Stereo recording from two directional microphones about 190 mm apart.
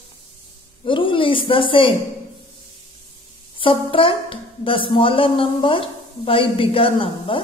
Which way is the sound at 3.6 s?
25° left (ahead or behind).